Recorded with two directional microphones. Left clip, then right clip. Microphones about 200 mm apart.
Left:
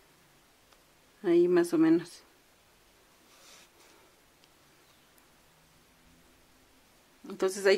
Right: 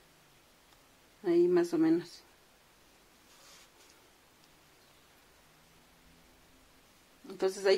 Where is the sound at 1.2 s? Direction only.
25° left (ahead or behind).